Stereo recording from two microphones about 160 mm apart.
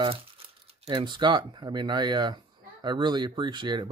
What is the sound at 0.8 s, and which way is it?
Speech, 25° right (ahead or behind).